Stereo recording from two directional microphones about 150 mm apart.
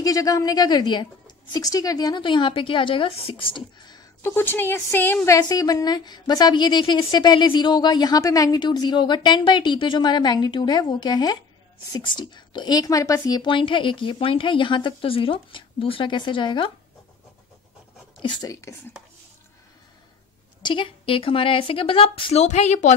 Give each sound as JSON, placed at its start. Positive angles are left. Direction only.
{"t": 0.0, "sound": "a woman's voice", "side_deg": 25}
{"t": 4.2, "sound": "a woman's voice", "side_deg": 15}
{"t": 18.2, "sound": "a woman's voice", "side_deg": 25}
{"t": 20.6, "sound": "a woman's voice", "side_deg": 35}